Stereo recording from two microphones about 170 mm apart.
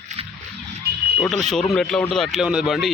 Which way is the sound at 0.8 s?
70° right (ahead or behind).